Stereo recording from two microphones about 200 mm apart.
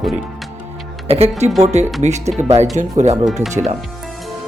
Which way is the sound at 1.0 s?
30° right (ahead or behind).